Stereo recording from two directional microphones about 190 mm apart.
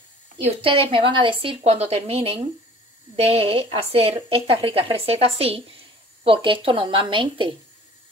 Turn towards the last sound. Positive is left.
turn(degrees=-25)  # may be behind; listen again after turning